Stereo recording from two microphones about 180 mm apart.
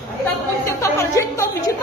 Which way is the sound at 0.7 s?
15° left (ahead or behind).